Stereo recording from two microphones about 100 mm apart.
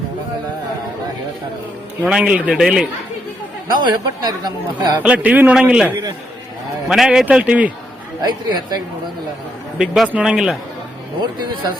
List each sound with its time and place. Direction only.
2.0 s a man's voice: 10° right (ahead or behind)
3.7 s speech: 45° right (ahead or behind)
5.0 s a man's voice: 15° right (ahead or behind)
8.2 s speech: 45° right (ahead or behind)
9.7 s a man's voice: 5° right (ahead or behind)